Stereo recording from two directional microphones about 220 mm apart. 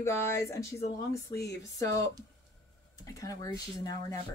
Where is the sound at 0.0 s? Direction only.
10° left (ahead or behind).